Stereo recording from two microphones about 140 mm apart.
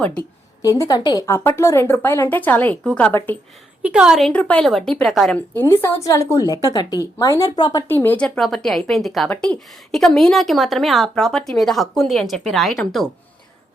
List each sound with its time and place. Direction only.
0.6 s speech: 25° left (ahead or behind); by 3.2 s 10° left (ahead or behind)
3.8 s a woman's voice: 5° right (ahead or behind)
4.3 s a woman's voice: 10° left (ahead or behind)
5.5 s speech: 15° left (ahead or behind)
7.9 s a woman's voice: 15° left (ahead or behind)